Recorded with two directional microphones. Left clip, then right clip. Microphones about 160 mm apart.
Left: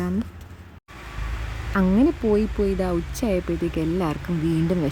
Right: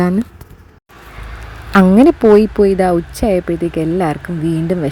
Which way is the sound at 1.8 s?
35° right (ahead or behind).